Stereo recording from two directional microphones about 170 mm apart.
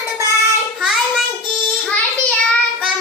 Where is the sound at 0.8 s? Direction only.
Centre (ahead or behind).